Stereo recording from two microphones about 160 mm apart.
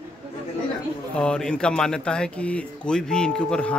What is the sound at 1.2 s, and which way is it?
Speech, 5° left (ahead or behind).